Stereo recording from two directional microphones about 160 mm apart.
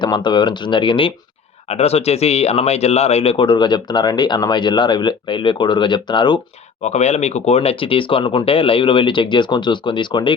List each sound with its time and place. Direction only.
0.0 s speech: 30° left (ahead or behind)
6.8 s speech: 45° left (ahead or behind); by 10.3 s 30° left (ahead or behind)